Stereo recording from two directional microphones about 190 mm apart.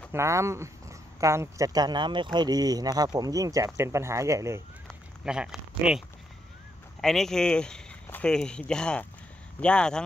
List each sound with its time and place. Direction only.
0.1 s speech: 15° right (ahead or behind)
4.8 s a sound: 5° right (ahead or behind)
7.0 s speech: centre (ahead or behind)